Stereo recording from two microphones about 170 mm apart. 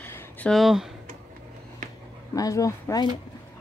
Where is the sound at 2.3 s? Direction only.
20° left (ahead or behind).